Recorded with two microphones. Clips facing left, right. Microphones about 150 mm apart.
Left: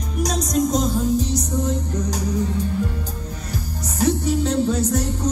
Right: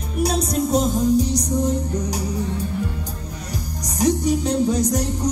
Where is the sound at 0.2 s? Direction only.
30° right (ahead or behind).